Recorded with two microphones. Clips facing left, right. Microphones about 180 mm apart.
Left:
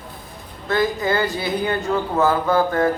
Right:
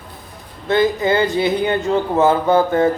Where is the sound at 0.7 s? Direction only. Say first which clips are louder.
Right 4 dB; 20° right (ahead or behind).